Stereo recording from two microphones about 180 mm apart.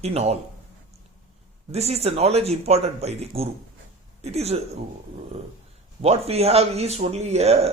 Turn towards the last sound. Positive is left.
turn(degrees=-35)  # may be behind; listen again after turning